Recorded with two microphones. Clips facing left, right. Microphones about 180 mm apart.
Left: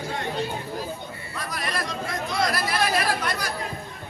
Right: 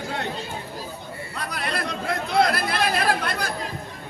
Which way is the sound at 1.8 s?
60° right (ahead or behind).